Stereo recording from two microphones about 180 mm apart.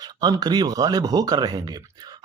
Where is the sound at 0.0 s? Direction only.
20° right (ahead or behind).